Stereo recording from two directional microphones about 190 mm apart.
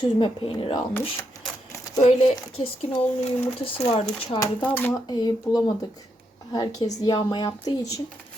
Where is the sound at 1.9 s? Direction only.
35° left (ahead or behind).